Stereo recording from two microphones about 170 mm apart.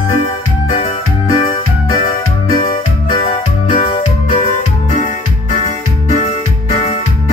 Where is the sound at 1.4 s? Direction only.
25° left (ahead or behind).